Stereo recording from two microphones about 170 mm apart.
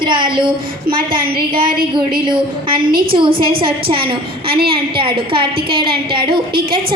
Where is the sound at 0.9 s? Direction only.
60° right (ahead or behind).